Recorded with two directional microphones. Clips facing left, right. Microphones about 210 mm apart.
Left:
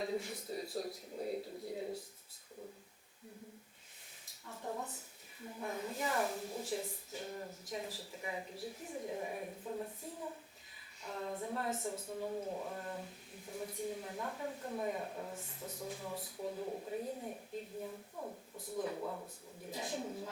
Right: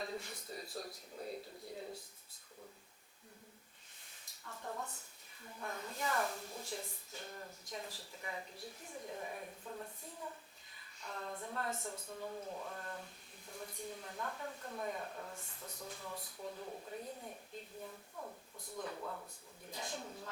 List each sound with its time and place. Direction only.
0.0 s a sound: 5° left (ahead or behind)
4.4 s a sound: 15° left (ahead or behind)
5.5 s speech: 5° left (ahead or behind)
11.0 s speech: 5° left (ahead or behind)
17.8 s speech: 15° left (ahead or behind)
18.5 s speech: 5° left (ahead or behind)
19.7 s speech: 5° left (ahead or behind)